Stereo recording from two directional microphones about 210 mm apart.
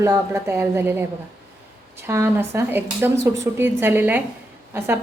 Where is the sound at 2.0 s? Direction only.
10° right (ahead or behind).